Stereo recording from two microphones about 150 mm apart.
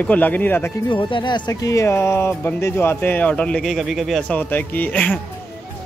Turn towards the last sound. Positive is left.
turn(degrees=10)  # may be behind; listen again after turning